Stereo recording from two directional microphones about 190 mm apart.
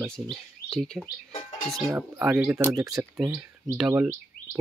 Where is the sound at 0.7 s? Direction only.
Centre (ahead or behind); by 3.4 s 15° right (ahead or behind).